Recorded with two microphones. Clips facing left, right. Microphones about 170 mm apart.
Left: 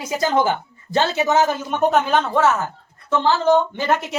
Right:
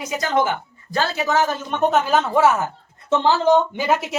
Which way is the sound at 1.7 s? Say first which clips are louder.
Right 1 dB; centre (ahead or behind).